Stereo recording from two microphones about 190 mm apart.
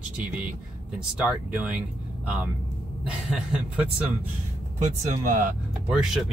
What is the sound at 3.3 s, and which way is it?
Speech, 5° right (ahead or behind).